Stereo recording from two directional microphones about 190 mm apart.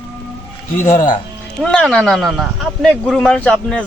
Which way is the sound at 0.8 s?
45° left (ahead or behind).